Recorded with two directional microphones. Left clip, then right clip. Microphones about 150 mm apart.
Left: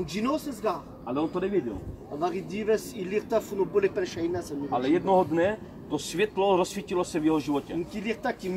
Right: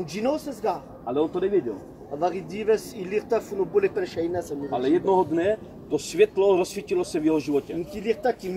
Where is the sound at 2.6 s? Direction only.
20° left (ahead or behind).